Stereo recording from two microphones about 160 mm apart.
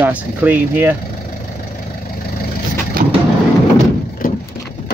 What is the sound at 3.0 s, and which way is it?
Vehicle, 65° right (ahead or behind).